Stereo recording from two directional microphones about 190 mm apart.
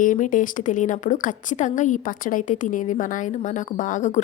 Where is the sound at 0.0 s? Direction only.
45° left (ahead or behind).